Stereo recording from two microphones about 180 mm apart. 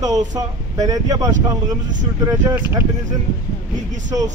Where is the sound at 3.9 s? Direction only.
45° right (ahead or behind).